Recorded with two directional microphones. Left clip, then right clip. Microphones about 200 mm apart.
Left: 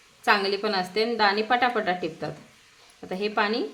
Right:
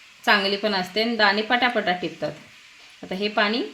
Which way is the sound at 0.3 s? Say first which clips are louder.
Right 3 dB; 45° right (ahead or behind).